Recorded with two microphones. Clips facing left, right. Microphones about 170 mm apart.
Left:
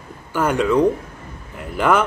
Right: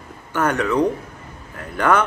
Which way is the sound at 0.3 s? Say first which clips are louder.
Left 2 dB; 10° left (ahead or behind).